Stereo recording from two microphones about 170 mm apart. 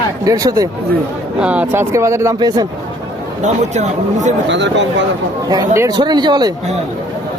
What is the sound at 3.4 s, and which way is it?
Speech, 45° right (ahead or behind).